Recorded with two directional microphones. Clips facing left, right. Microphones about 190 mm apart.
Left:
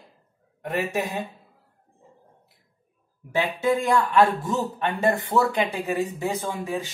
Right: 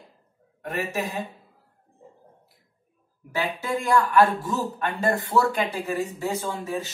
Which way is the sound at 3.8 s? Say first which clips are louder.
Right 3 dB; 20° left (ahead or behind).